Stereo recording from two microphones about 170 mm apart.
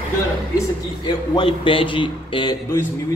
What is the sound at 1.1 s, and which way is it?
A man's voice, 30° left (ahead or behind).